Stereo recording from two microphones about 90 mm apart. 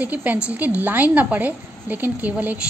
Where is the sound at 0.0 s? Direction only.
15° right (ahead or behind).